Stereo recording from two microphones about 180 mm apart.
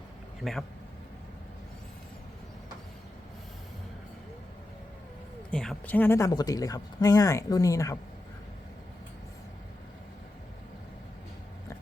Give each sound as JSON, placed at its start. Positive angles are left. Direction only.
{"t": 0.4, "sound": "speech", "side_deg": 0}
{"t": 5.5, "sound": "speech", "side_deg": 5}